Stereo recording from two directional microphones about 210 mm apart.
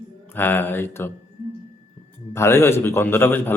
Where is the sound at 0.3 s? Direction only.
10° left (ahead or behind).